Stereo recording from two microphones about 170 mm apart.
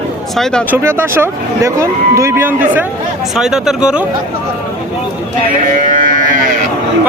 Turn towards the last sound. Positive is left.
turn(degrees=-50)  # may be behind; listen again after turning